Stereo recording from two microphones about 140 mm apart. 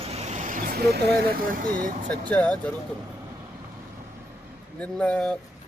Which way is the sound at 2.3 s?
10° left (ahead or behind).